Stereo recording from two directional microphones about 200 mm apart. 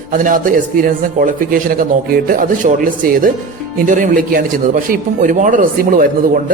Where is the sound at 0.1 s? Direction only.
40° right (ahead or behind).